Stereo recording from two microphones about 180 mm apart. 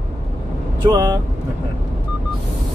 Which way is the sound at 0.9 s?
20° right (ahead or behind).